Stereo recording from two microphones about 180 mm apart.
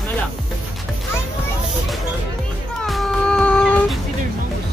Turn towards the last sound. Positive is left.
turn(degrees=5)  # may be behind; listen again after turning